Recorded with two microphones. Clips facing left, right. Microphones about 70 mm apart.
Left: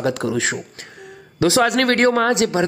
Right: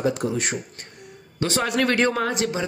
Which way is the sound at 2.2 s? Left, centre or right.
Left.